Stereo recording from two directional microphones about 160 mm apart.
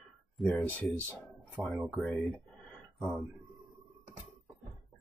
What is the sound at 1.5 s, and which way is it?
Speech, 5° right (ahead or behind).